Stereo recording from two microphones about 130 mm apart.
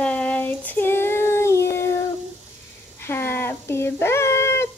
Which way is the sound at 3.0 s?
20° left (ahead or behind).